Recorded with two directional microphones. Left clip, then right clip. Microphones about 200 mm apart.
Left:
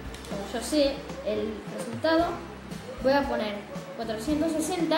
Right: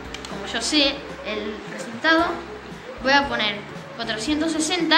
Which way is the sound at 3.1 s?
20° left (ahead or behind).